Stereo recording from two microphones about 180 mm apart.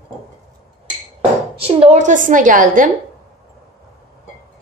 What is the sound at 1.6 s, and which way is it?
A woman's voice, 35° right (ahead or behind).